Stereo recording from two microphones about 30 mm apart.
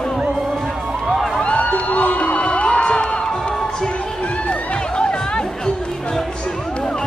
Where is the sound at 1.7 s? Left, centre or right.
Left.